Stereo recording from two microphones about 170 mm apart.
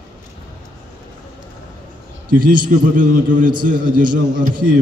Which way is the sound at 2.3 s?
55° right (ahead or behind).